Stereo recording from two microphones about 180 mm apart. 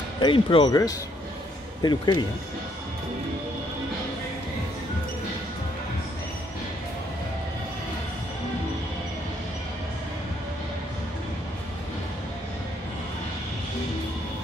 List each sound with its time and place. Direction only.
0.2 s speech: 30° left (ahead or behind)